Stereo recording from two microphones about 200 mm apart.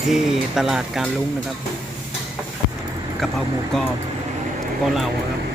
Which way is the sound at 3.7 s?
Centre (ahead or behind).